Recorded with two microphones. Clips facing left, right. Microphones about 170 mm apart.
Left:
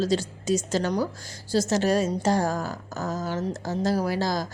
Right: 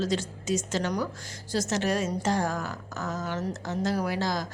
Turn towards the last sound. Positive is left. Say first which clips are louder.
# left 3 dB
turn(degrees=35)  # may be behind; listen again after turning